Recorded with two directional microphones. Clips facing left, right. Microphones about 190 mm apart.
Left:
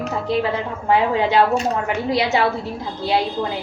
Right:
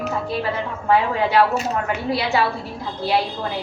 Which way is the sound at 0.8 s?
20° left (ahead or behind).